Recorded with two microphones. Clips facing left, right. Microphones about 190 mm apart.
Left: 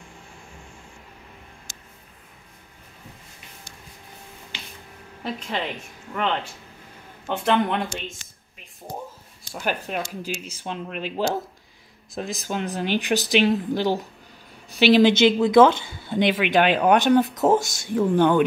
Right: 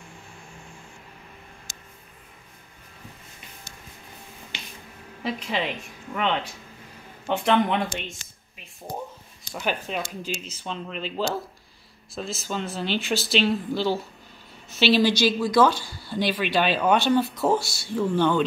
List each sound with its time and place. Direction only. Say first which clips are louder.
5.2 s speech: right 1 dB; centre (ahead or behind)
9.5 s speech: left 1 dB; 5° left (ahead or behind)